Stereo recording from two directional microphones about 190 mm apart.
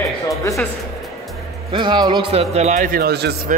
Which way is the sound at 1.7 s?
25° right (ahead or behind).